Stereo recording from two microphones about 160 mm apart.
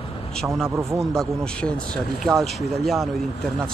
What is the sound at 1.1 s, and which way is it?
Speech, 5° left (ahead or behind).